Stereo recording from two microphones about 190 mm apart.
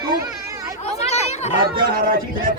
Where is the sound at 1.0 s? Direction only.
35° left (ahead or behind).